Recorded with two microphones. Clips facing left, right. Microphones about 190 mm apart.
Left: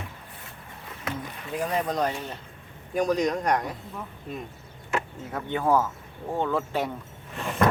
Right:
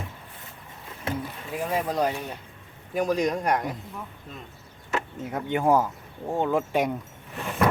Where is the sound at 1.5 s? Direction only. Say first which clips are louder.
Even; 5° right (ahead or behind).